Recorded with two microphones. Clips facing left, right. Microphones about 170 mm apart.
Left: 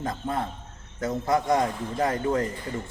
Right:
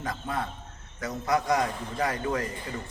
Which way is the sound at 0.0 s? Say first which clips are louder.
Left 3 dB; 25° left (ahead or behind).